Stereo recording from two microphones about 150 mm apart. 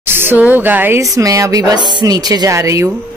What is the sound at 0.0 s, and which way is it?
Speech, 15° right (ahead or behind).